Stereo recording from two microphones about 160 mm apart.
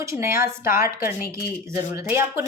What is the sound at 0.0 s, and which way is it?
Speech, 15° right (ahead or behind).